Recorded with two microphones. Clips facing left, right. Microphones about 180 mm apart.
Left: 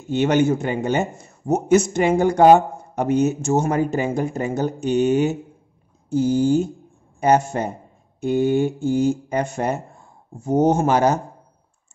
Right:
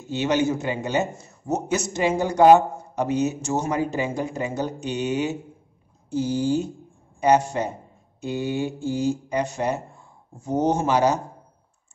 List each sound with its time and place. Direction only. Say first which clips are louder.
0.1 s a man's voice: left 4 dB; 55° left (ahead or behind)